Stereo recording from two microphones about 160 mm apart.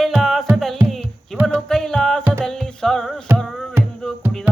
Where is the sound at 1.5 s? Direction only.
5° left (ahead or behind).